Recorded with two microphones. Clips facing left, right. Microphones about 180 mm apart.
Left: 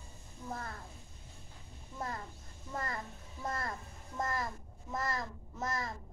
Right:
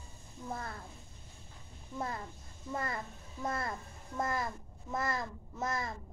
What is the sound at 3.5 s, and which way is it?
A child's voice, 5° right (ahead or behind).